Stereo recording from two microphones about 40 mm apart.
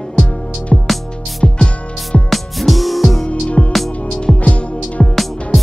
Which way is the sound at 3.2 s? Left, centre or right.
Left.